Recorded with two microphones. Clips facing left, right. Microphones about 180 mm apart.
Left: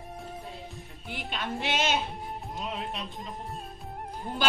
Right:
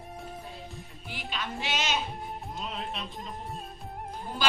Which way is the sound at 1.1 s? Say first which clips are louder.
Left 2 dB; 55° left (ahead or behind).